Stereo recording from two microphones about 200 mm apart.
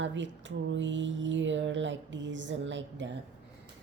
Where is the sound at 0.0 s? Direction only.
65° right (ahead or behind).